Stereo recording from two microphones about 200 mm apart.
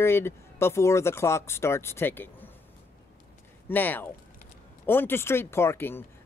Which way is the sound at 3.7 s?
10° left (ahead or behind).